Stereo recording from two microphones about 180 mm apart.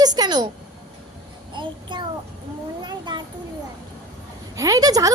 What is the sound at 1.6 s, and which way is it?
Child singing, 25° right (ahead or behind).